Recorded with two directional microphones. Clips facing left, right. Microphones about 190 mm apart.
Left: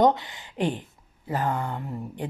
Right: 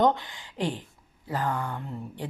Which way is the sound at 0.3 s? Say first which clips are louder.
Left 3 dB; 15° left (ahead or behind).